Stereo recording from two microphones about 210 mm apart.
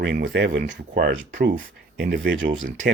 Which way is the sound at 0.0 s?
50° right (ahead or behind).